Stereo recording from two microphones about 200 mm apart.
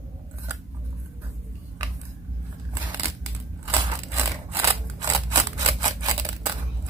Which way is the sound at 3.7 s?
20° right (ahead or behind).